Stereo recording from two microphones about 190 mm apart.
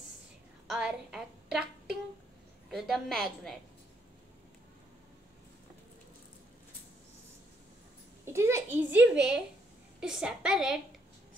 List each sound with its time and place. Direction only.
0.7 s a woman's voice: 5° right (ahead or behind)
2.7 s a woman's voice: centre (ahead or behind)
8.3 s a child's voice: 15° right (ahead or behind)